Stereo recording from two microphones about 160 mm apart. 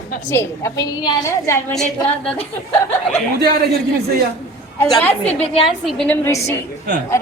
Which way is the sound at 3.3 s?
75° right (ahead or behind).